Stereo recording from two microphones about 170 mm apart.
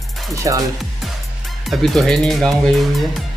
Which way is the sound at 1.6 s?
Centre (ahead or behind).